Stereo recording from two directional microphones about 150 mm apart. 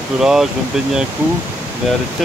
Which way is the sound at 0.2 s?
5° right (ahead or behind).